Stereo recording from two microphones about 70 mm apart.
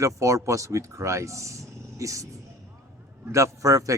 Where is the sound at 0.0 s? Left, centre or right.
Right.